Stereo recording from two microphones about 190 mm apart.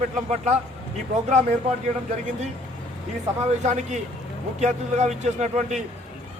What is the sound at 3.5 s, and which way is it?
A man's voice, 40° right (ahead or behind).